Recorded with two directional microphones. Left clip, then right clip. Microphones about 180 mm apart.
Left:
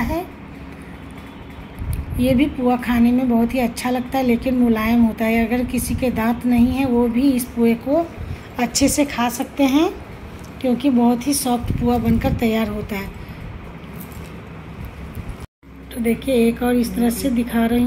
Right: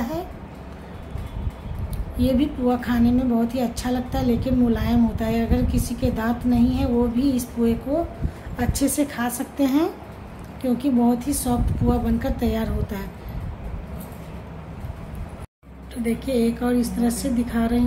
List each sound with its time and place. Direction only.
2.1 s a woman's voice: 5° left (ahead or behind)
16.3 s a woman's voice: 10° left (ahead or behind)